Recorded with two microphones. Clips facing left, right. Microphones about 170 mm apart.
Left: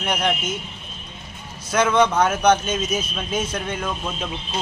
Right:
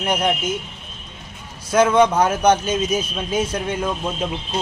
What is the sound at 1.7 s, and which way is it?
Speech, 10° right (ahead or behind).